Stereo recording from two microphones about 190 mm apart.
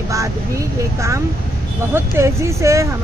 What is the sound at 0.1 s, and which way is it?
Speech, 15° right (ahead or behind).